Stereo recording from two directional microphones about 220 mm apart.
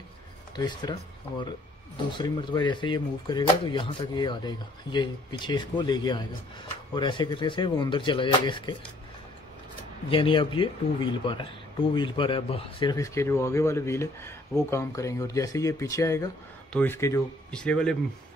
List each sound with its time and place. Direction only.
0.6 s speech: 20° left (ahead or behind)
2.1 s speech: 20° left (ahead or behind)
10.0 s speech: 25° left (ahead or behind); by 17.9 s 5° left (ahead or behind)